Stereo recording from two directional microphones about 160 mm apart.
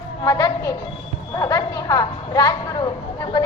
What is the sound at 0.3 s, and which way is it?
A woman's voice, 25° left (ahead or behind).